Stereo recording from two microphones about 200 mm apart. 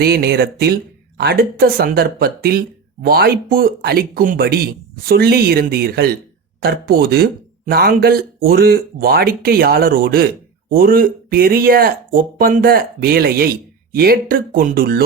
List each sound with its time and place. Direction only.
0.0 s speech: 55° right (ahead or behind)